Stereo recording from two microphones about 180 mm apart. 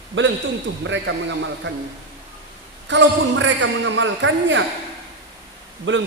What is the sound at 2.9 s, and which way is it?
Speech, 90° right.